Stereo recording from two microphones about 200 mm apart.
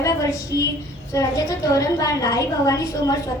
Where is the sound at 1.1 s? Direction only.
15° left (ahead or behind).